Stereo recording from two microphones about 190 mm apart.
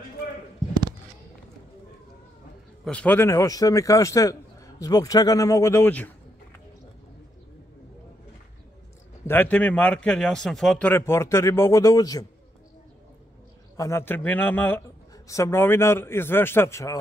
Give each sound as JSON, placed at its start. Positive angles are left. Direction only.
{"t": 2.8, "sound": "a man's voice", "side_deg": 5}
{"t": 9.3, "sound": "a man's voice", "side_deg": 10}
{"t": 13.7, "sound": "a man's voice", "side_deg": 15}